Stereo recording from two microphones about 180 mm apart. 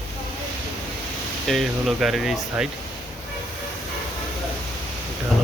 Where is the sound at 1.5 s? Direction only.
Centre (ahead or behind).